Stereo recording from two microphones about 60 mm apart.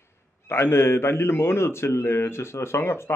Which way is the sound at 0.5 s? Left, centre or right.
Left.